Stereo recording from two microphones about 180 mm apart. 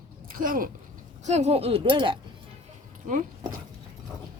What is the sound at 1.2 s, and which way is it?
Speech, 40° right (ahead or behind).